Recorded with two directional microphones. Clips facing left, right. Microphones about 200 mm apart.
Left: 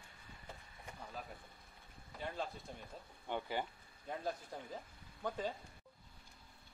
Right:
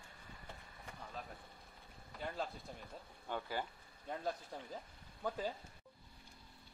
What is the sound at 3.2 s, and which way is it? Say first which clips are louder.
Speech: left 2 dB; 20° left (ahead or behind).